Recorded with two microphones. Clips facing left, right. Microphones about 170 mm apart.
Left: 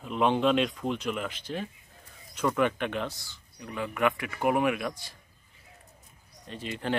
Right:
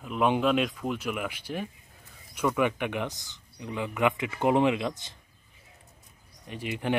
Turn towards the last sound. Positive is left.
turn(degrees=-15)  # may be behind; listen again after turning